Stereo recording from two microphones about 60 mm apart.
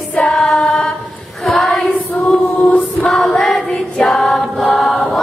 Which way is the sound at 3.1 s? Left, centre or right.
Centre.